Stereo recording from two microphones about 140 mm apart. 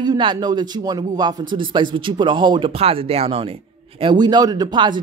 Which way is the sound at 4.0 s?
30° right (ahead or behind).